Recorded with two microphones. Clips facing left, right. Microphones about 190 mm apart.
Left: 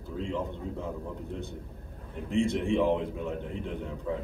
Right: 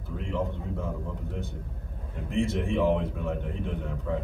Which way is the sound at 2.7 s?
15° left (ahead or behind).